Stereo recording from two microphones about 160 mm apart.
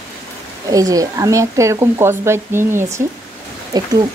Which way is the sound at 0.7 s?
20° right (ahead or behind).